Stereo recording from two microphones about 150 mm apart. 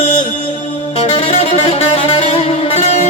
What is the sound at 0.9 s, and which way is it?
Music, 45° left (ahead or behind).